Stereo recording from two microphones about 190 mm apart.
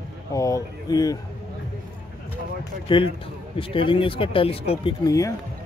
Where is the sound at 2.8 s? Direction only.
25° left (ahead or behind).